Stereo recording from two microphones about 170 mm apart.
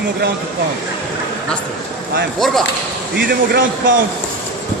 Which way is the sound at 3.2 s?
65° right (ahead or behind).